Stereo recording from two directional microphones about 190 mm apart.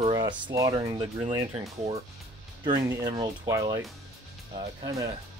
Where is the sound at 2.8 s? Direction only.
20° right (ahead or behind).